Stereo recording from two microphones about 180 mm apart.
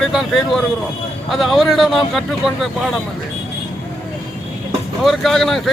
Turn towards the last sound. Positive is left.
turn(degrees=0)  # may be behind; listen again after turning